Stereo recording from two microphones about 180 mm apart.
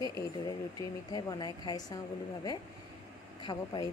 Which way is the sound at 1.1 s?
20° left (ahead or behind).